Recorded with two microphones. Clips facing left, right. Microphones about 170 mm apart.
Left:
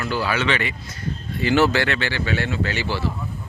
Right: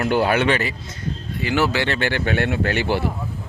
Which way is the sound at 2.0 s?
55° right (ahead or behind).